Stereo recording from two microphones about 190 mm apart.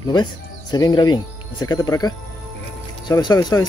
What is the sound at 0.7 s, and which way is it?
Speech, 20° left (ahead or behind).